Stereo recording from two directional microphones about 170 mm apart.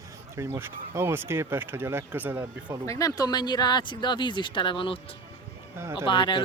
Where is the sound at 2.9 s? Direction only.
20° left (ahead or behind).